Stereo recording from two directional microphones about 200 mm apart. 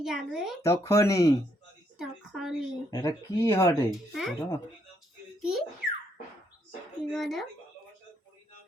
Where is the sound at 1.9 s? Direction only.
Centre (ahead or behind).